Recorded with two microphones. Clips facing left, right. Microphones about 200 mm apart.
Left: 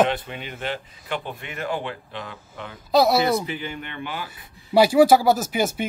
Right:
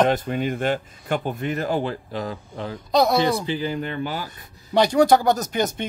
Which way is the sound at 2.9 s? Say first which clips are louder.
Left 1 dB; 5° left (ahead or behind).